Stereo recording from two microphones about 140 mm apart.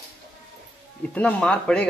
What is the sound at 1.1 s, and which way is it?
Speech, 10° left (ahead or behind).